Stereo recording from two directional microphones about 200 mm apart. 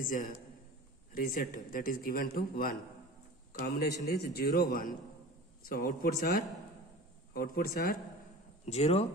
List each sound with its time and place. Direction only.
0.0 s a man's voice: 45° left (ahead or behind)
8.6 s speech: 30° left (ahead or behind)